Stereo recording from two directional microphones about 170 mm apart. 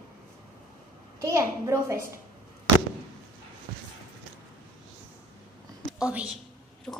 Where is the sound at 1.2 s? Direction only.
15° right (ahead or behind).